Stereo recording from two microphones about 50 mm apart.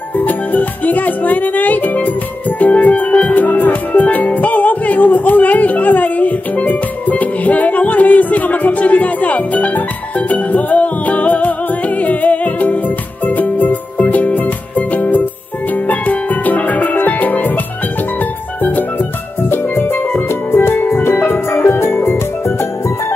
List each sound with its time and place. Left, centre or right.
0.2 s music: left
18.6 s music: left
19.5 s music: left